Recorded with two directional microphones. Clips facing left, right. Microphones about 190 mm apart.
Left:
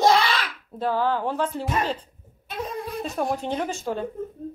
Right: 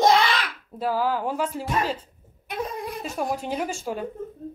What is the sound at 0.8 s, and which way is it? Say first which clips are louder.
Speech: left 1 dB; 10° right (ahead or behind).